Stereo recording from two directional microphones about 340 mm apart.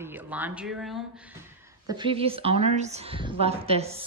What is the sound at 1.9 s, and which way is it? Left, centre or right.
A woman's voice, centre.